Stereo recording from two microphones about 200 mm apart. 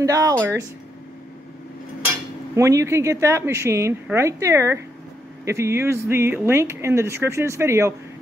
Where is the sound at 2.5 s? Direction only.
15° right (ahead or behind).